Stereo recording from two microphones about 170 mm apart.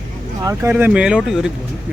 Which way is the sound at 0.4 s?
15° right (ahead or behind).